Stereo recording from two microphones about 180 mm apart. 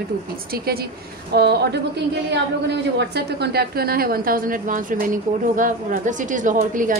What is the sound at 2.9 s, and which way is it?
A woman's voice, 65° right (ahead or behind).